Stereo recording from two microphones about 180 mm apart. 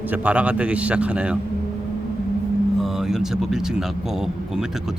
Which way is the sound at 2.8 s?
Centre (ahead or behind).